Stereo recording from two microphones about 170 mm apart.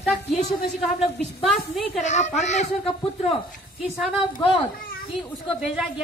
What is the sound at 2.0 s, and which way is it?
Speech, 45° left (ahead or behind).